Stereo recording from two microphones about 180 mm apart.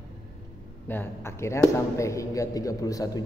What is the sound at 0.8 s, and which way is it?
A man's voice, 10° left (ahead or behind).